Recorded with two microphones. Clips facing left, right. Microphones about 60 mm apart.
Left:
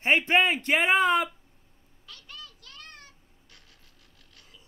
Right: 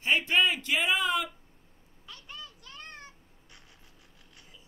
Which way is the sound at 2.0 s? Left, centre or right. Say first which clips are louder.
Right 1 dB; right.